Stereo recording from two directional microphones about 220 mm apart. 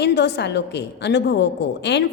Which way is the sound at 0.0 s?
50° left (ahead or behind).